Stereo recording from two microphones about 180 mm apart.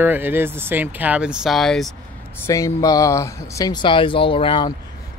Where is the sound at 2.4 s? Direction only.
15° left (ahead or behind).